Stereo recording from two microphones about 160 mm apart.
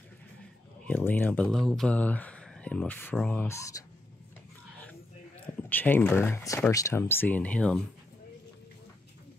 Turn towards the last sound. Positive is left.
turn(degrees=5)  # may be behind; listen again after turning